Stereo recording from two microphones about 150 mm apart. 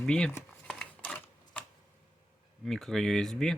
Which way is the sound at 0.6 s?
5° left (ahead or behind).